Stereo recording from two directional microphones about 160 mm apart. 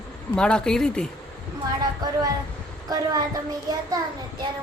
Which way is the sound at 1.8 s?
25° right (ahead or behind).